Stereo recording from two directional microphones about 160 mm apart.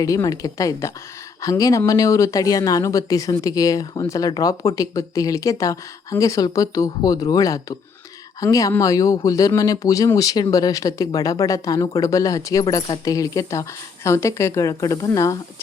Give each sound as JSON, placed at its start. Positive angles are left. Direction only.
{"t": 0.0, "sound": "speech", "side_deg": 20}